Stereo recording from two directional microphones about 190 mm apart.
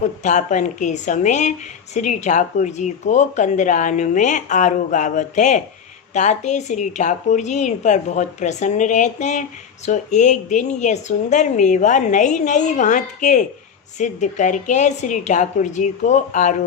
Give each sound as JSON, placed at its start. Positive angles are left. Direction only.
{"t": 0.2, "sound": "a woman's voice", "side_deg": 40}